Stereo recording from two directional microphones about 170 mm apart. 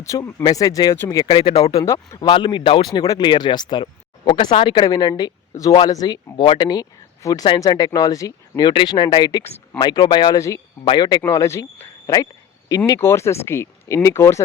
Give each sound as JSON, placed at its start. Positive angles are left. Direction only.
{"t": 0.0, "sound": "speech", "side_deg": 20}
{"t": 1.7, "sound": "speech", "side_deg": 15}